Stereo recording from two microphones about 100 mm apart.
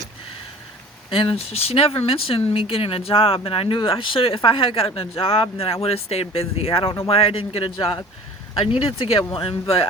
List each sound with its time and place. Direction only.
1.1 s speech: 65° left (ahead or behind)
9.0 s speech: 70° left (ahead or behind)